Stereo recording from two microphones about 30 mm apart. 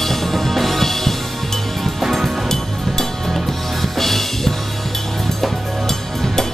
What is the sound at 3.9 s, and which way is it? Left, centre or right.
Music, centre.